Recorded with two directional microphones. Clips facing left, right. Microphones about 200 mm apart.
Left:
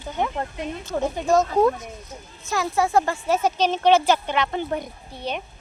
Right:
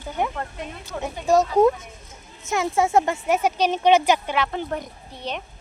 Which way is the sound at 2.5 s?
25° right (ahead or behind).